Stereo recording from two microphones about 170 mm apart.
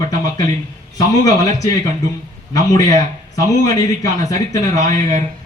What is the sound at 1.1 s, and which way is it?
Speech, 20° left (ahead or behind).